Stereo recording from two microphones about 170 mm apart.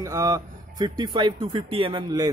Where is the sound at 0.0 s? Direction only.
20° right (ahead or behind).